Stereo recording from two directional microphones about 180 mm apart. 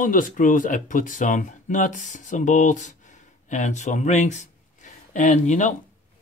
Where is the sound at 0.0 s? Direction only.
45° left (ahead or behind).